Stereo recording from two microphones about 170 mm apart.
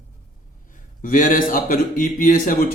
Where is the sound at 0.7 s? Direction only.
50° left (ahead or behind).